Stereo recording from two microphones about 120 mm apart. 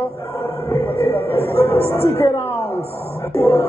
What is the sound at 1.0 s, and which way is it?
A man's voice, 15° left (ahead or behind).